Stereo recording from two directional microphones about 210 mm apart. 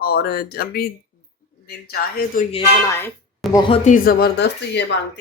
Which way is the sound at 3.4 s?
Centre (ahead or behind).